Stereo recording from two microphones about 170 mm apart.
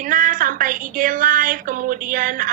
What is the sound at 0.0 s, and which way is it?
A woman's voice, 50° right (ahead or behind).